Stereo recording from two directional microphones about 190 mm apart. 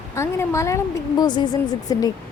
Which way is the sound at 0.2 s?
15° left (ahead or behind).